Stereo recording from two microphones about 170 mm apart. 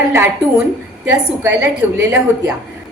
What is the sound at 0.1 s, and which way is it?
A woman's voice, 15° right (ahead or behind).